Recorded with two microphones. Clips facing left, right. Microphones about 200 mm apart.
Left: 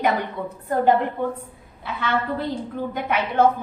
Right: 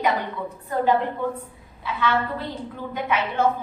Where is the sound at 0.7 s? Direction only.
55° left (ahead or behind).